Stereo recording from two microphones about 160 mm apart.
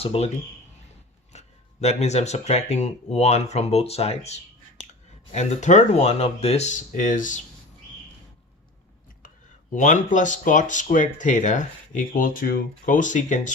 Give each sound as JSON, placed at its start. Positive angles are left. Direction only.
{"t": 0.0, "sound": "speech", "side_deg": 40}
{"t": 1.3, "sound": "speech", "side_deg": 45}
{"t": 9.7, "sound": "speech", "side_deg": 50}